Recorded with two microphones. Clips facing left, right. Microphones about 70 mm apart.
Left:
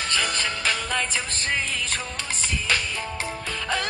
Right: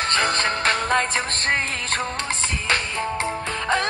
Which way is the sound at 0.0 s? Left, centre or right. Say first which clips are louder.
Right 5 dB; right.